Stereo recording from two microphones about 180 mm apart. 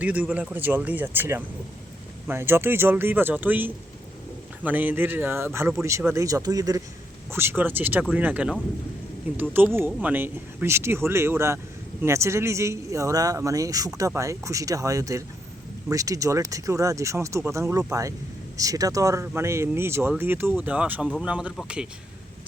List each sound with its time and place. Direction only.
0.0 s speech: 10° right (ahead or behind)